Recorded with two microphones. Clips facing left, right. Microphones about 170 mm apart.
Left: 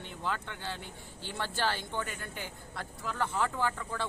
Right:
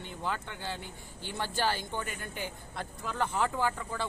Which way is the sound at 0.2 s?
10° right (ahead or behind).